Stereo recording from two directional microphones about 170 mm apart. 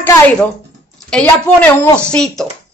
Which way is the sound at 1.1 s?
5° left (ahead or behind).